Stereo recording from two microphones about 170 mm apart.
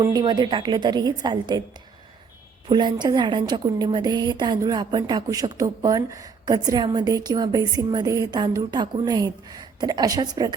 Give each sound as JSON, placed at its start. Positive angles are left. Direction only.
{"t": 0.0, "sound": "a woman's voice", "side_deg": -25}
{"t": 2.6, "sound": "a woman's voice", "side_deg": -25}